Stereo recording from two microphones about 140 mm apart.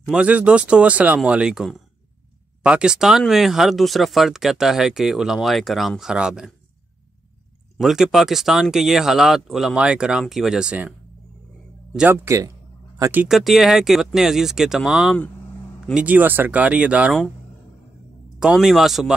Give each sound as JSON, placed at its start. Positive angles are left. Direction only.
{"t": 0.0, "sound": "speech", "side_deg": -5}
{"t": 7.7, "sound": "speech", "side_deg": -5}
{"t": 12.1, "sound": "a man's voice", "side_deg": -20}
{"t": 13.1, "sound": "speech", "side_deg": -5}
{"t": 18.4, "sound": "speech", "side_deg": -5}